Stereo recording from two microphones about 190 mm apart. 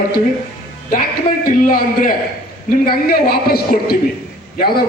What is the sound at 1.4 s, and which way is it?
Speech, 50° left (ahead or behind).